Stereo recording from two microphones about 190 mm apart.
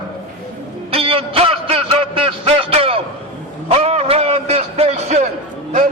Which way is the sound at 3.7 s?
35° right (ahead or behind).